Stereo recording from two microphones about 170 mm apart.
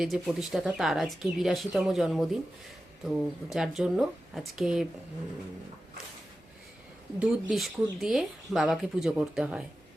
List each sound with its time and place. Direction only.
0.0 s speech: centre (ahead or behind)
7.2 s speech: 5° right (ahead or behind)